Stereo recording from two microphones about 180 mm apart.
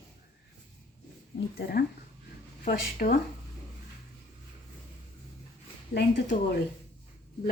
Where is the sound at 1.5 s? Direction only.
55° left (ahead or behind).